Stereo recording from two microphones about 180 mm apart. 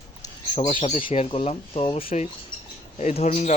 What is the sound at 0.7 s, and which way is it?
Speech, 30° left (ahead or behind).